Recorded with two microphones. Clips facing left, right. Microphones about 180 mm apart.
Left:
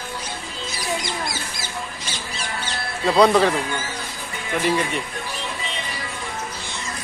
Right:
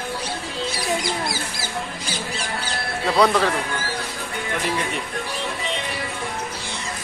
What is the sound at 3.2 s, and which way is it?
Speech, 5° left (ahead or behind).